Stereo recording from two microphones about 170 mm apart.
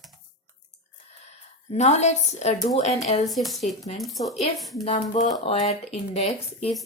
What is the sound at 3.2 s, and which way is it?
Speech, centre (ahead or behind).